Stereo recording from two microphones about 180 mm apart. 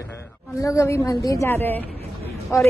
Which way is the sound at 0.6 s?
15° left (ahead or behind).